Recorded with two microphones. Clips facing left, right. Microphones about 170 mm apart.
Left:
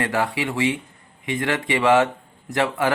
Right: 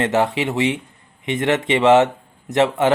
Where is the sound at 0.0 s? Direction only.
20° right (ahead or behind).